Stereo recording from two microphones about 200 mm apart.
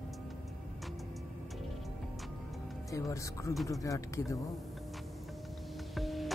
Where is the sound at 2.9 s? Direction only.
15° left (ahead or behind).